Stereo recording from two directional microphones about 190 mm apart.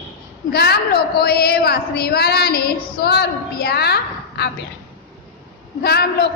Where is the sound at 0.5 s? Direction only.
55° left (ahead or behind).